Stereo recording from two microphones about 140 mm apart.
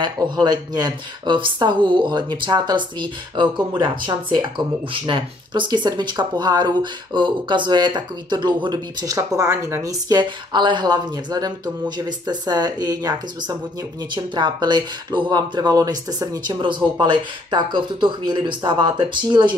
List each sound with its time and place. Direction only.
0.0 s speech: 30° right (ahead or behind)